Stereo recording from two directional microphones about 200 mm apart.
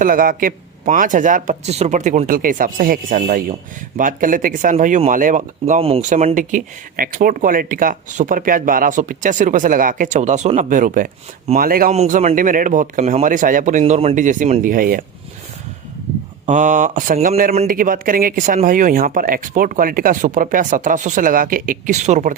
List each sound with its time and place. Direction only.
0.0 s speech: 45° right (ahead or behind)
11.9 s speech: 35° right (ahead or behind)
16.5 s speech: 40° right (ahead or behind)